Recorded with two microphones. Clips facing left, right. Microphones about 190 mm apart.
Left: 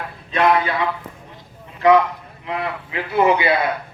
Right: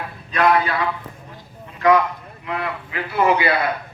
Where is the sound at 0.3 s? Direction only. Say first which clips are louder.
Even; 25° left (ahead or behind).